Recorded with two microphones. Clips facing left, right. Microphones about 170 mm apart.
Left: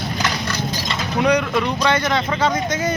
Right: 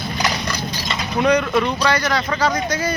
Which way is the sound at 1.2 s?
10° left (ahead or behind).